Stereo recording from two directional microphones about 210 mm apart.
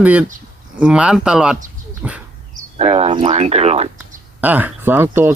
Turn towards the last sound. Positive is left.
turn(degrees=-10)  # may be behind; listen again after turning